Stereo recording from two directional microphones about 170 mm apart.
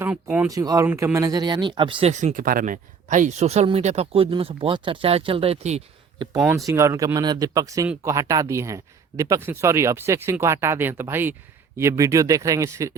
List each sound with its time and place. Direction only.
0.0 s speech: 5° right (ahead or behind)
0.5 s speech: 20° right (ahead or behind)
2.1 s speech: 50° right (ahead or behind)
6.4 s speech: 5° right (ahead or behind)
6.7 s speech: 15° right (ahead or behind)